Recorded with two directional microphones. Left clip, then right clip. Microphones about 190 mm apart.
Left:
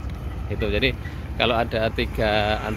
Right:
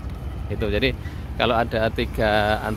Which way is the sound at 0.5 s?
15° right (ahead or behind).